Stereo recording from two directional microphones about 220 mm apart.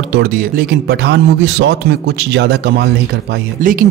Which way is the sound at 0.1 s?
45° right (ahead or behind).